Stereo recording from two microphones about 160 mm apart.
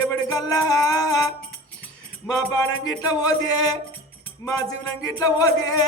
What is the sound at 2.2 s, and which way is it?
Music, 25° left (ahead or behind).